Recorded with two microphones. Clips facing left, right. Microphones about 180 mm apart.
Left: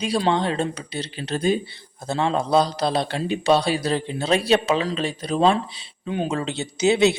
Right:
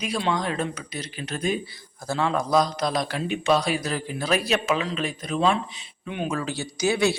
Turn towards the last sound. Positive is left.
turn(degrees=20)  # may be behind; listen again after turning